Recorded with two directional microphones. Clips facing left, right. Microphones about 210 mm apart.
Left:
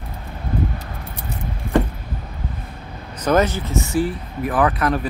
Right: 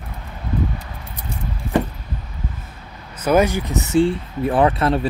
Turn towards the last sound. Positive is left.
turn(degrees=-25)  # may be behind; listen again after turning